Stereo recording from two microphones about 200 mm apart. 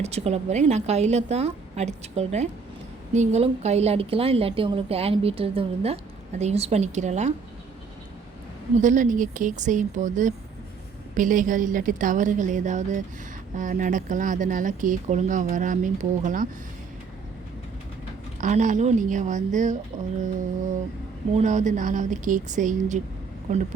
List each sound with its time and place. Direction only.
0.0 s a woman's voice: 30° right (ahead or behind)
8.8 s speech: 40° right (ahead or behind)
18.3 s speech: 35° right (ahead or behind)
21.3 s speech: 35° right (ahead or behind)